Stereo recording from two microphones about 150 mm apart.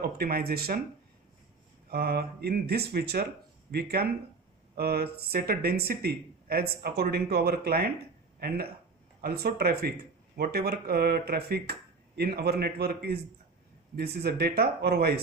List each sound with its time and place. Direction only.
0.0 s speech: 90° right
1.9 s speech: 90° right